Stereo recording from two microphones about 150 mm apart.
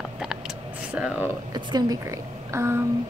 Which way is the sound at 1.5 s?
25° right (ahead or behind).